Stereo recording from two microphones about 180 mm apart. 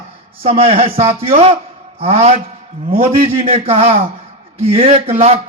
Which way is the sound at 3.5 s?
35° right (ahead or behind).